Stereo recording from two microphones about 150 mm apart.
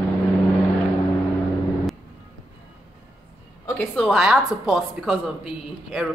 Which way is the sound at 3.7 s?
5° left (ahead or behind).